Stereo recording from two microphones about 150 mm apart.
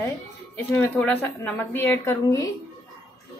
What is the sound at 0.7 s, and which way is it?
A woman's voice, 5° left (ahead or behind).